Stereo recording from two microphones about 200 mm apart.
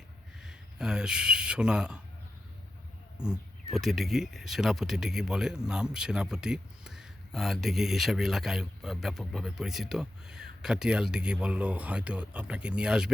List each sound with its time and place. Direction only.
0.3 s speech: 5° right (ahead or behind)
3.2 s speech: centre (ahead or behind)